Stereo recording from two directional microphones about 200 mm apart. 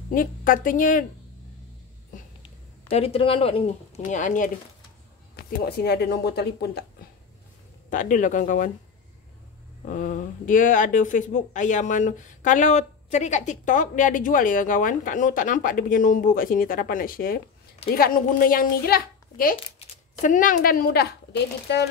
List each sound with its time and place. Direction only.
0.1 s a child's voice: 45° left (ahead or behind)
2.9 s speech: 30° left (ahead or behind)
5.3 s a child's voice: 55° left (ahead or behind)
7.9 s speech: 40° left (ahead or behind)
9.8 s a child's voice: 40° left (ahead or behind); by 21.8 s 60° left (ahead or behind)